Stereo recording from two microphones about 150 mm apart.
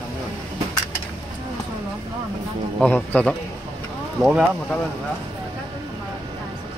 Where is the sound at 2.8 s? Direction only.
10° left (ahead or behind).